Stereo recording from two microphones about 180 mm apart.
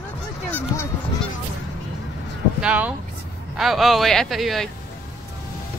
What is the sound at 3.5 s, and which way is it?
Speech, centre (ahead or behind).